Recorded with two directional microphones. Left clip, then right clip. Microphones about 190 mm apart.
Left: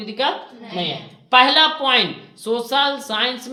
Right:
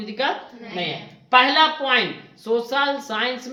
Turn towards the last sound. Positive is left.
turn(degrees=35)  # may be behind; listen again after turning